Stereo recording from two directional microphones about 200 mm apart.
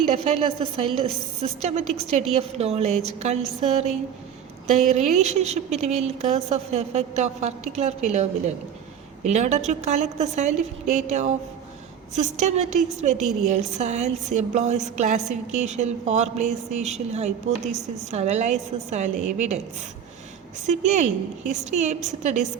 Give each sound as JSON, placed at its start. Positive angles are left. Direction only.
{"t": 0.2, "sound": "a woman's voice", "side_deg": -30}
{"t": 20.7, "sound": "a woman's voice", "side_deg": -35}